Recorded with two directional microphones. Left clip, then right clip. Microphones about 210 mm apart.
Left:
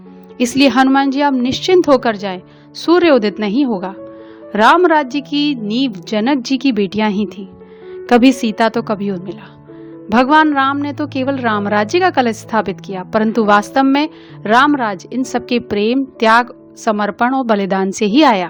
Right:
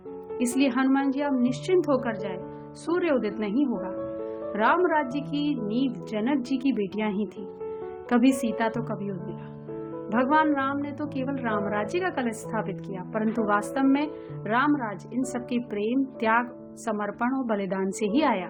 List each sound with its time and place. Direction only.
0.3 s a woman's voice: 45° left (ahead or behind)